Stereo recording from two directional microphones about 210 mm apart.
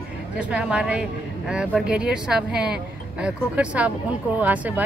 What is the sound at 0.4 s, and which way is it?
Speech, 5° right (ahead or behind).